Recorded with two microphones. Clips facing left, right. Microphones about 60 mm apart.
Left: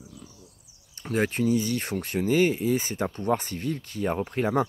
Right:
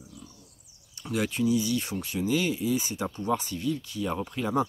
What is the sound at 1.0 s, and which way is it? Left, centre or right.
Speech, left.